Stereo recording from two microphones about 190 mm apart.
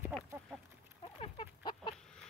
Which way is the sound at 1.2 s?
30° left (ahead or behind).